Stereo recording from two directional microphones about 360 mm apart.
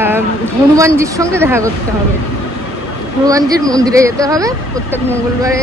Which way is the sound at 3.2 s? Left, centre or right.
Centre.